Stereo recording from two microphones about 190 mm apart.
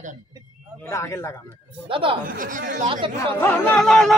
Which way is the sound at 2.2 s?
45° right (ahead or behind).